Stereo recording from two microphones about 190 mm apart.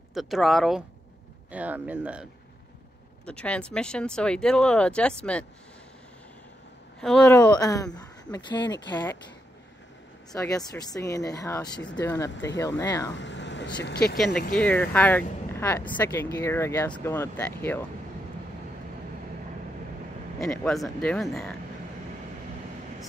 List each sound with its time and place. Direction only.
0.1 s speech: centre (ahead or behind)
3.3 s speech: 5° left (ahead or behind)
7.0 s speech: 5° left (ahead or behind)
7.6 s speech: 20° left (ahead or behind)
8.6 s speech: 70° left (ahead or behind)
10.3 s speech: 20° left (ahead or behind)
12.3 s speech: 70° left (ahead or behind)
12.5 s speech: 20° left (ahead or behind)
13.1 s vehicle: 70° left (ahead or behind)
13.8 s speech: 55° left (ahead or behind)
14.1 s speech: centre (ahead or behind)
20.3 s speech: 5° left (ahead or behind)